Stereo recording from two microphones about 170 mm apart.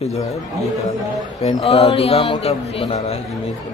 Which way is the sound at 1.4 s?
35° left (ahead or behind).